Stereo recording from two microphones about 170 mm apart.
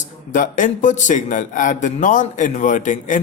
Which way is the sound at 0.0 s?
50° left (ahead or behind).